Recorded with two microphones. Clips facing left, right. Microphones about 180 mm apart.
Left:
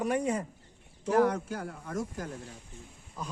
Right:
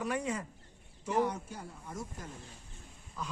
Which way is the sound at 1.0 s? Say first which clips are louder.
Left 6 dB; 90° left.